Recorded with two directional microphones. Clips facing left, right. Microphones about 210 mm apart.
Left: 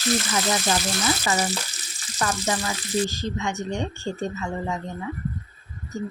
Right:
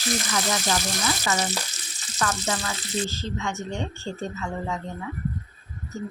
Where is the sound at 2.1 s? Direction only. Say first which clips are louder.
Left 2 dB; 15° left (ahead or behind).